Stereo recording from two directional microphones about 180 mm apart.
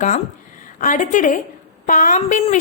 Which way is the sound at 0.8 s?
45° left (ahead or behind).